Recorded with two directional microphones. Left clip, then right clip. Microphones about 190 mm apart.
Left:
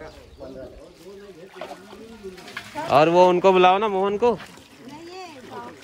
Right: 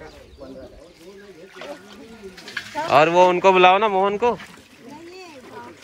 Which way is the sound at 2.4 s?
40° left (ahead or behind).